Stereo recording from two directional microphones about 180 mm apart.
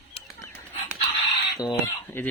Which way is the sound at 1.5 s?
25° left (ahead or behind).